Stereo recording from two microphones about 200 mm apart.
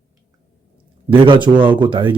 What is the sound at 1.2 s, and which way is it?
Speech, 25° right (ahead or behind).